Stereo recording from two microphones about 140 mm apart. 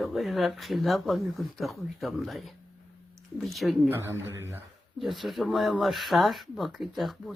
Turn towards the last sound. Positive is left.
turn(degrees=0)  # may be behind; listen again after turning